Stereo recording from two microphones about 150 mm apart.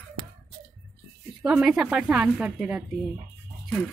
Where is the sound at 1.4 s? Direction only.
5° right (ahead or behind).